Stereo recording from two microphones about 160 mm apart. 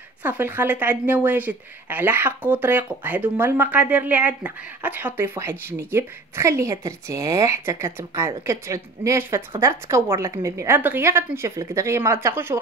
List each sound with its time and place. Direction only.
0.2 s speech: 10° right (ahead or behind)